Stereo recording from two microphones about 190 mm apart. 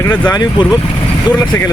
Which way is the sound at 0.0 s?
10° left (ahead or behind).